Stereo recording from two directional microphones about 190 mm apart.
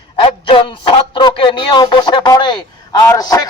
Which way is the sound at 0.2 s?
30° left (ahead or behind).